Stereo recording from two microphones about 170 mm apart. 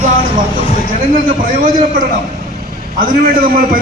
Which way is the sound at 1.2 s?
55° right (ahead or behind).